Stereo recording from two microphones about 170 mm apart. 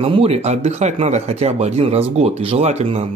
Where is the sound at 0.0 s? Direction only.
35° right (ahead or behind).